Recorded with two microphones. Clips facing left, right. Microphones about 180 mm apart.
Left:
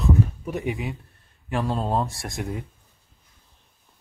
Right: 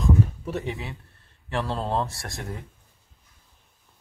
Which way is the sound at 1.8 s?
5° left (ahead or behind).